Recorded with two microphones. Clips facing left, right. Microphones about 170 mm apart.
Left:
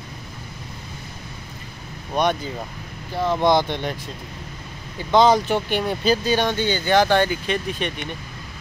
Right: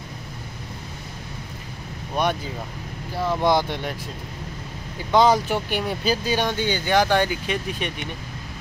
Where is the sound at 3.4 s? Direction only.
10° right (ahead or behind).